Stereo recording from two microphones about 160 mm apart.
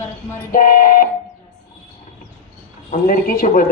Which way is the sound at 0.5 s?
60° left (ahead or behind).